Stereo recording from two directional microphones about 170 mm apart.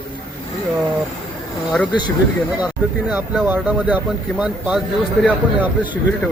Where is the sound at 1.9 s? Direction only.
25° left (ahead or behind).